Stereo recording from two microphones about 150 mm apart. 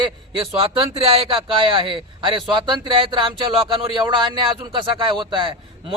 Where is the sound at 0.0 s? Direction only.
35° right (ahead or behind).